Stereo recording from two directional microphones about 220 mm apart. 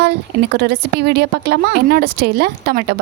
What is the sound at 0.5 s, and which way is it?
A woman's voice, 50° right (ahead or behind).